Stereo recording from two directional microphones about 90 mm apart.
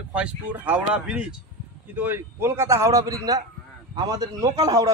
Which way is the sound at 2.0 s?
25° right (ahead or behind).